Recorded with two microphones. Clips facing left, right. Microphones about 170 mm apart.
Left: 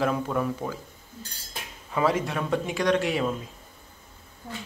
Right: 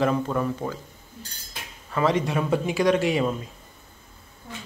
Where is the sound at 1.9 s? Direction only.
5° left (ahead or behind).